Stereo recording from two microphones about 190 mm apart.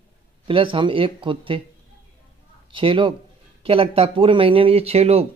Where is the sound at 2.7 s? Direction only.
25° right (ahead or behind).